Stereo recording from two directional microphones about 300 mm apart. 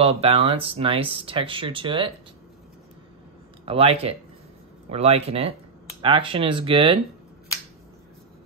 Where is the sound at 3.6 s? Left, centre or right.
Centre.